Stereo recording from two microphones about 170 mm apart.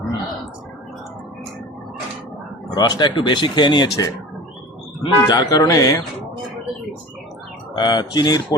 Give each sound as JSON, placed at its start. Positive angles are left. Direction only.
{"t": 2.7, "sound": "speech", "side_deg": 25}
{"t": 7.8, "sound": "speech", "side_deg": 25}